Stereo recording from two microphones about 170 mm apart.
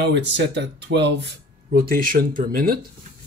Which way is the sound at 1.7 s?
60° right (ahead or behind).